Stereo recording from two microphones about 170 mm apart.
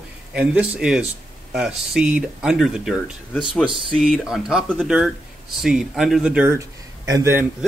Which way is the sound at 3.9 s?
Centre (ahead or behind).